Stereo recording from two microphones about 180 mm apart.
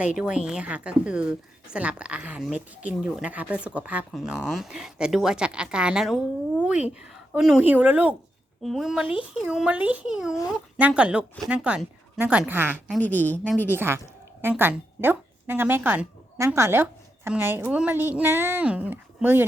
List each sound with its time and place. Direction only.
0.2 s a woman's voice: 5° right (ahead or behind)
12.9 s a woman's voice: 10° left (ahead or behind)
13.7 s a woman's voice: 15° right (ahead or behind)